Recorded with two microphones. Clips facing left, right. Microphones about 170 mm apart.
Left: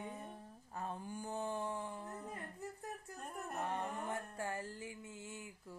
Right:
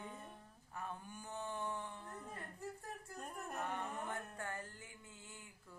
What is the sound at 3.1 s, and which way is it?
Music, centre (ahead or behind).